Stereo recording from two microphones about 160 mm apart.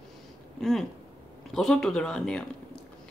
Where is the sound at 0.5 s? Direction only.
Centre (ahead or behind).